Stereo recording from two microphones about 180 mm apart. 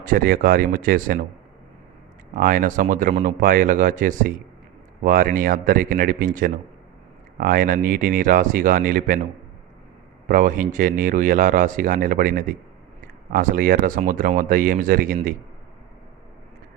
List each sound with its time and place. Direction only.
0.0 s speech: 55° right (ahead or behind)
2.3 s speech: 50° right (ahead or behind)
10.2 s speech: 50° right (ahead or behind)